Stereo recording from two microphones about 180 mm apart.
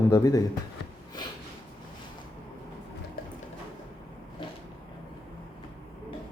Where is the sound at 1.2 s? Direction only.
25° left (ahead or behind).